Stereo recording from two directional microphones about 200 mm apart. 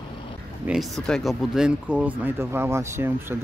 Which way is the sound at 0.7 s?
Centre (ahead or behind).